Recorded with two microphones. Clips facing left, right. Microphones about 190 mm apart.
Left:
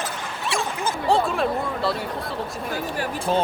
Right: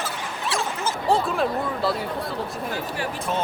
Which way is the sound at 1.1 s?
Centre (ahead or behind).